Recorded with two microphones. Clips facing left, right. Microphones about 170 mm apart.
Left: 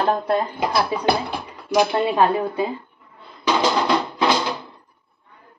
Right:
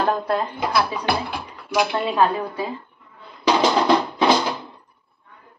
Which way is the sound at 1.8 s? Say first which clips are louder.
Left 2 dB; 30° left (ahead or behind).